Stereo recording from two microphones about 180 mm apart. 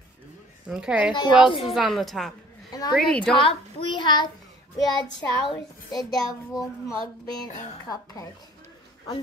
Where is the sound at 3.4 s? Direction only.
30° left (ahead or behind).